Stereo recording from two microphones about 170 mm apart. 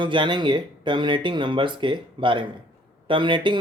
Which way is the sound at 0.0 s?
30° right (ahead or behind).